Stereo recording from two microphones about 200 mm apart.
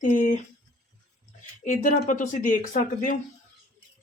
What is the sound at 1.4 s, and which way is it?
Speech, 40° left (ahead or behind).